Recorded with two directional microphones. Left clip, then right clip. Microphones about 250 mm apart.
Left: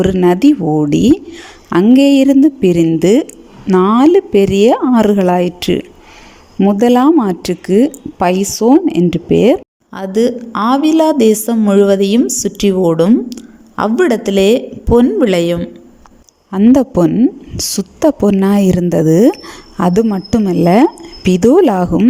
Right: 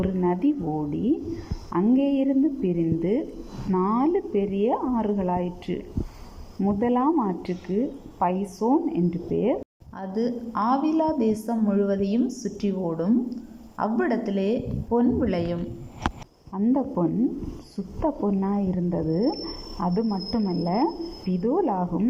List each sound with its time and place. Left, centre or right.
0.2 s speech: left